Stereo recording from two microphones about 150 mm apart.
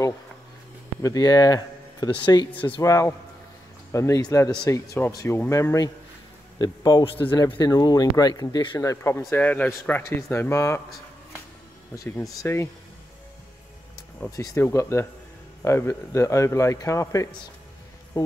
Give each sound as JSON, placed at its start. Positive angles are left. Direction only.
{"t": 1.0, "sound": "speech", "side_deg": 25}
{"t": 2.8, "sound": "speech", "side_deg": 20}
{"t": 11.9, "sound": "speech", "side_deg": 20}
{"t": 14.3, "sound": "speech", "side_deg": 20}